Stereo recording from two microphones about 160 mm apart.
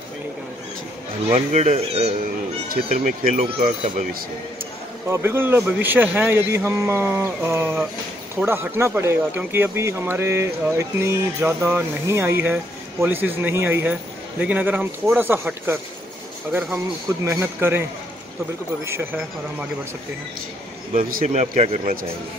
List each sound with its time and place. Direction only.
1.3 s speech: 45° right (ahead or behind)
2.9 s speech: 55° right (ahead or behind)
5.0 s speech: 15° right (ahead or behind)
20.9 s a man's voice: 50° right (ahead or behind)